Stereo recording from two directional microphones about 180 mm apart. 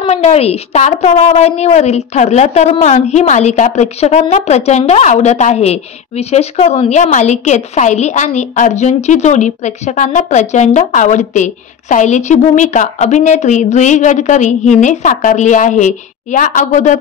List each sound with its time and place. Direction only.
0.0 s a woman's voice: 35° left (ahead or behind)